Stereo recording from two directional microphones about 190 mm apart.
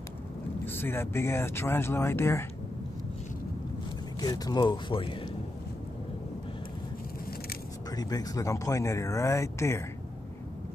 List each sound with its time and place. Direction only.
0.7 s speech: 10° left (ahead or behind)
4.2 s speech: 20° left (ahead or behind)
7.9 s speech: 20° left (ahead or behind)